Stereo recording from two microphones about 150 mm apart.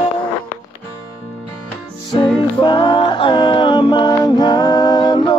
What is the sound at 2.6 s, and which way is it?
Music, 30° left (ahead or behind).